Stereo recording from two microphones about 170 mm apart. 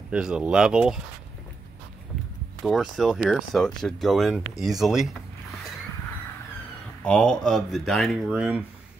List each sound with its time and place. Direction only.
0.1 s speech: 5° right (ahead or behind)
2.6 s speech: centre (ahead or behind)
7.0 s speech: 5° left (ahead or behind)